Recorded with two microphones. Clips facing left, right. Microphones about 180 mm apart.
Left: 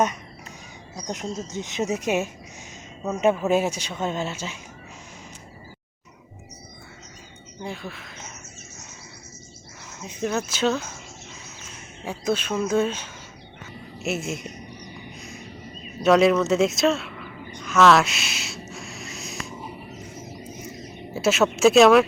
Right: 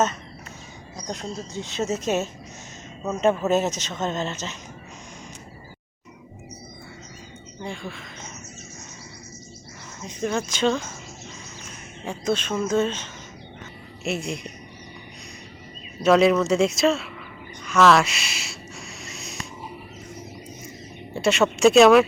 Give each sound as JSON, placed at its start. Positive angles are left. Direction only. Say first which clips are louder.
{"t": 1.0, "sound": "speech", "louder": "left 2 dB", "side_deg": 20}
{"t": 7.6, "sound": "speech", "louder": "even", "side_deg": 5}
{"t": 10.0, "sound": "speech", "louder": "even", "side_deg": 5}
{"t": 12.0, "sound": "speech", "louder": "even", "side_deg": 5}
{"t": 16.0, "sound": "a sound", "louder": "even", "side_deg": 0}
{"t": 21.1, "sound": "speech", "louder": "even", "side_deg": 5}